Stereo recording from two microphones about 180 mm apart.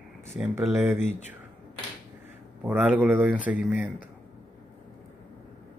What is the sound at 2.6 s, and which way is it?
Speech, 10° right (ahead or behind).